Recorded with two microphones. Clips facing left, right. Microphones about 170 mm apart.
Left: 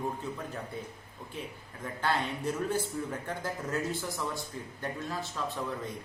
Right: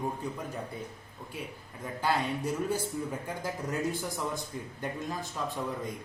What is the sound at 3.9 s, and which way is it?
Speech, 15° right (ahead or behind).